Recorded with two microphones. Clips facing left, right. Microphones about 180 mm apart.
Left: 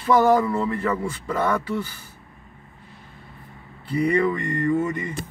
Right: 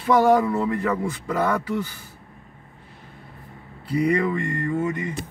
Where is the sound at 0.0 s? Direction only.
5° right (ahead or behind).